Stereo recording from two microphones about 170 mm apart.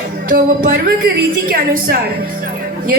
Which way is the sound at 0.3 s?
55° right (ahead or behind).